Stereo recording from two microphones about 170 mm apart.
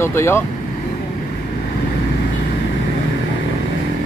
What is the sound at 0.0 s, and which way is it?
Speech, 15° left (ahead or behind).